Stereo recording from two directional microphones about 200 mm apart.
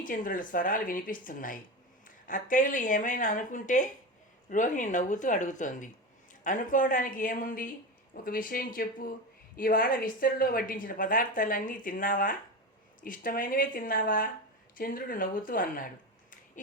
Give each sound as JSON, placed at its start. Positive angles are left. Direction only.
{"t": 0.0, "sound": "a woman's voice", "side_deg": 40}